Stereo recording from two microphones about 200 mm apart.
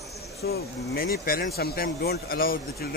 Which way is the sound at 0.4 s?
50° left (ahead or behind).